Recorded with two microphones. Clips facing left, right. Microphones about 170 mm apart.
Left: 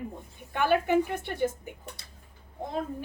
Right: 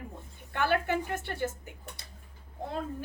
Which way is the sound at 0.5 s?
15° left (ahead or behind).